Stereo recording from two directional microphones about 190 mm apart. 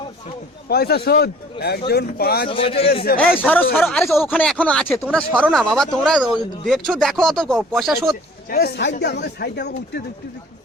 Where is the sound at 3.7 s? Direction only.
5° left (ahead or behind).